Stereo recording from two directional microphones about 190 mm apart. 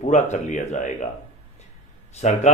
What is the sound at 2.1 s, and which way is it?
Speech, 35° left (ahead or behind).